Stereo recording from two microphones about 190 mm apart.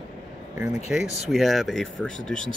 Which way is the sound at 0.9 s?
Centre (ahead or behind).